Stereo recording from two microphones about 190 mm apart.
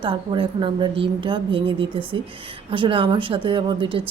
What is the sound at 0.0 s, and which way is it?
Speech, 25° right (ahead or behind).